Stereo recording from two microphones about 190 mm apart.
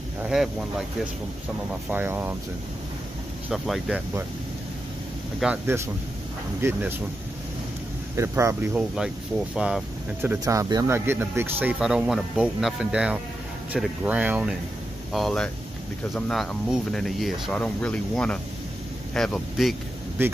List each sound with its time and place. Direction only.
0.2 s speech: centre (ahead or behind)
1.9 s speech: 10° right (ahead or behind)
3.4 s speech: centre (ahead or behind)
5.4 s speech: 5° right (ahead or behind)
8.2 s speech: 15° right (ahead or behind)
8.7 s speech: 5° right (ahead or behind)
15.1 s speech: 5° left (ahead or behind)
20.2 s speech: 10° right (ahead or behind)